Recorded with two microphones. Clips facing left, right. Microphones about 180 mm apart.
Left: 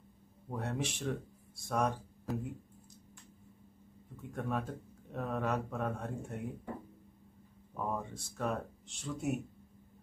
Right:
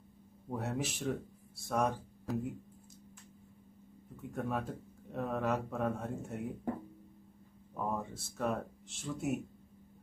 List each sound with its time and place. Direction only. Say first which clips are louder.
0.5 s speech: right 1 dB; 5° right (ahead or behind)
4.3 s speech: even; centre (ahead or behind)
7.7 s speech: right 1 dB; centre (ahead or behind)